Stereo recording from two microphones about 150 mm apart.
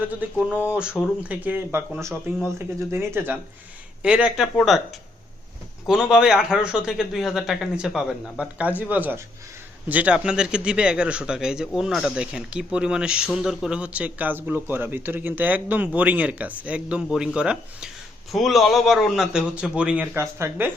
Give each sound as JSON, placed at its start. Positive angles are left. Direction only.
{"t": 0.2, "sound": "a man's voice", "side_deg": -5}
{"t": 5.8, "sound": "a man's voice", "side_deg": -5}